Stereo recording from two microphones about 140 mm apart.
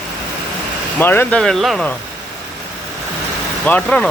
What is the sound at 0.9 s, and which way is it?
Speech, 15° left (ahead or behind).